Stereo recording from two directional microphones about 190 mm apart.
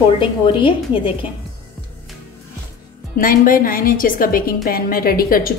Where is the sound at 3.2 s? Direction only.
50° left (ahead or behind).